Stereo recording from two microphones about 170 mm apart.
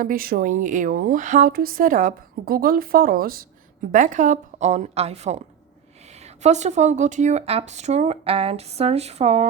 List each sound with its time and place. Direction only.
0.0 s speech: 55° right (ahead or behind)
3.9 s a woman's voice: 45° right (ahead or behind)